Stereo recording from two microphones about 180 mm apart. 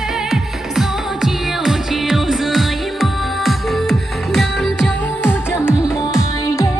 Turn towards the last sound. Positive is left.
turn(degrees=-5)  # may be behind; listen again after turning